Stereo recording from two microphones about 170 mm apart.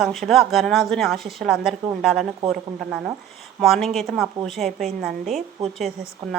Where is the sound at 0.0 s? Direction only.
Centre (ahead or behind).